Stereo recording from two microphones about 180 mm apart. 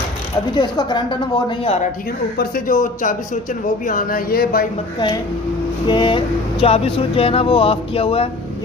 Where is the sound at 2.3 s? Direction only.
50° left (ahead or behind).